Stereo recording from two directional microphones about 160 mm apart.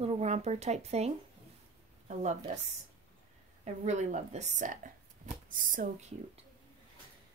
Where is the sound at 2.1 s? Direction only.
45° right (ahead or behind).